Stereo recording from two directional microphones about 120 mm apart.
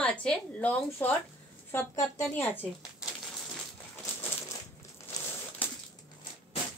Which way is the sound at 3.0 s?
5° right (ahead or behind).